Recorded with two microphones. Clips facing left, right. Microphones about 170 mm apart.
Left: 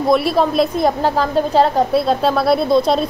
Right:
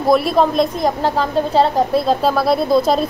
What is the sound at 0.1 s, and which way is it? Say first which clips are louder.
A woman's voice: right 1 dB; centre (ahead or behind).